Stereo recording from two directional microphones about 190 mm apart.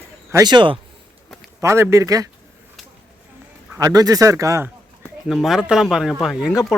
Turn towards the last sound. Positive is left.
turn(degrees=0)  # may be behind; listen again after turning